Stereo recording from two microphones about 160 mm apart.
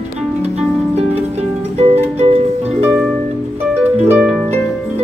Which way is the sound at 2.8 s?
5° right (ahead or behind).